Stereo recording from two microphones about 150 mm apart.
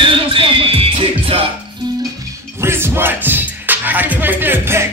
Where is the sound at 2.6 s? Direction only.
15° right (ahead or behind).